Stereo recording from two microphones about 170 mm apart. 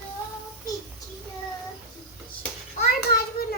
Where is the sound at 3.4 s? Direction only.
65° left (ahead or behind).